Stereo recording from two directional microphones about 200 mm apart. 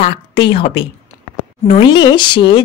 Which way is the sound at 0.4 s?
25° left (ahead or behind).